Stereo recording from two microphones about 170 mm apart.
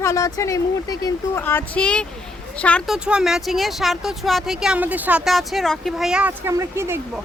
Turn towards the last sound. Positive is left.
turn(degrees=-15)  # may be behind; listen again after turning